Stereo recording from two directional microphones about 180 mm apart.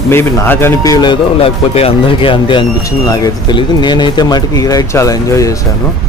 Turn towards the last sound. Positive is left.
turn(degrees=20)  # may be behind; listen again after turning